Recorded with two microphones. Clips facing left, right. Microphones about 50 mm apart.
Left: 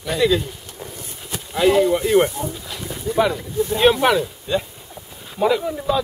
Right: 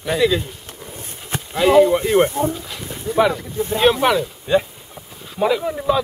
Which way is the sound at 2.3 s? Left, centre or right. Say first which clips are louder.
Right 7 dB; right.